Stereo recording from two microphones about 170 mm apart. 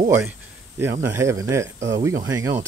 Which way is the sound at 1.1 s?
15° right (ahead or behind).